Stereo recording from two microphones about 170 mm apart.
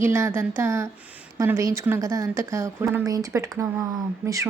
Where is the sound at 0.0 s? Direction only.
15° right (ahead or behind).